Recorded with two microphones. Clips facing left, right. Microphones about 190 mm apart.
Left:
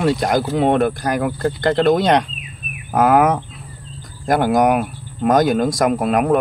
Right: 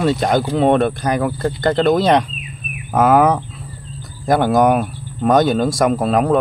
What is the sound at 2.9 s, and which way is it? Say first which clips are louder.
Speech: right 1 dB; 25° right (ahead or behind).